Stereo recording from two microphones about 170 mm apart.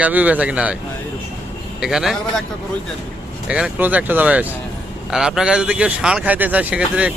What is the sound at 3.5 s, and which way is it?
Speech, 10° right (ahead or behind).